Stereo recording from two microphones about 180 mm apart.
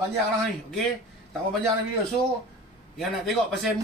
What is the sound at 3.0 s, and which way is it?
Speech, centre (ahead or behind).